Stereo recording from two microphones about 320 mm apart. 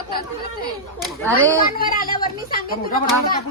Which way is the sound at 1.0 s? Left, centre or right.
Centre.